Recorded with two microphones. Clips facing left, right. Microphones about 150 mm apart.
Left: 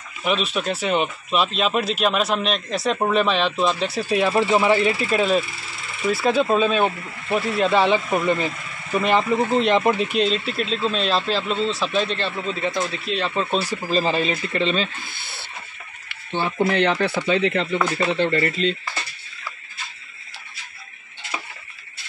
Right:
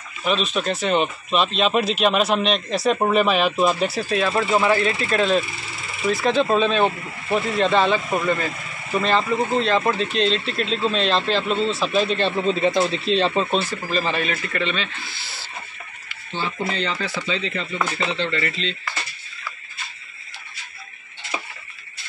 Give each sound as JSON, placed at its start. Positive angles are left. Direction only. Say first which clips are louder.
{"t": 0.2, "sound": "speech", "louder": "right 1 dB", "side_deg": 10}
{"t": 4.1, "sound": "speech", "louder": "left 3 dB", "side_deg": 15}
{"t": 12.2, "sound": "speech", "louder": "right 5 dB", "side_deg": -25}
{"t": 13.8, "sound": "speech", "louder": "left 3 dB", "side_deg": 30}
{"t": 15.0, "sound": "a sound", "louder": "even", "side_deg": 55}
{"t": 16.6, "sound": "speech", "louder": "left 9 dB", "side_deg": 65}